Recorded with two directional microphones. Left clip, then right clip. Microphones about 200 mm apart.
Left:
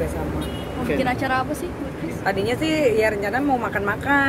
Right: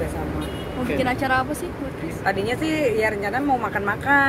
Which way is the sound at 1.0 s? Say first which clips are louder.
Right 2 dB; 50° right (ahead or behind).